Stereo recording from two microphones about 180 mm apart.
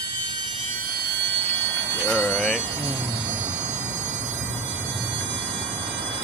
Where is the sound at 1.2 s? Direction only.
85° right.